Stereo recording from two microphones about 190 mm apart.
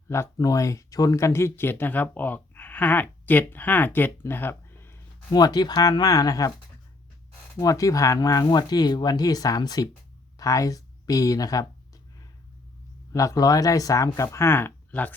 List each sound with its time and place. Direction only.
0.1 s speech: 15° left (ahead or behind)
7.6 s speech: 20° left (ahead or behind)
13.1 s speech: 15° left (ahead or behind)